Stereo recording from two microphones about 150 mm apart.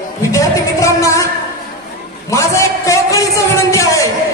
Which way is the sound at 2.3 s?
20° left (ahead or behind).